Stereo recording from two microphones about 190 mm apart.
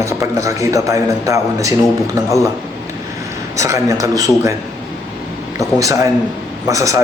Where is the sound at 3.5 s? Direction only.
15° right (ahead or behind).